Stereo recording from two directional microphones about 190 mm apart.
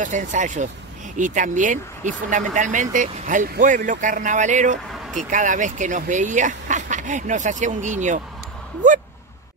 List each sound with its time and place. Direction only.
0.0 s speech: 40° right (ahead or behind)